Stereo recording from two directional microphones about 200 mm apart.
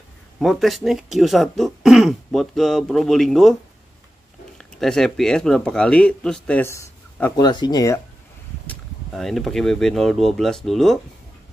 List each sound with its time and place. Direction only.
0.4 s speech: centre (ahead or behind)
4.6 s speech: 5° left (ahead or behind)
8.6 s speech: centre (ahead or behind)